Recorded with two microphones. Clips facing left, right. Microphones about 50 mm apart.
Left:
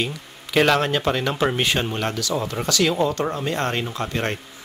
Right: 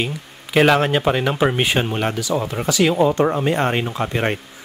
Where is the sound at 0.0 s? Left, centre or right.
Centre.